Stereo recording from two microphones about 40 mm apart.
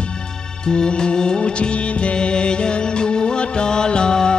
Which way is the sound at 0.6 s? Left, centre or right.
Left.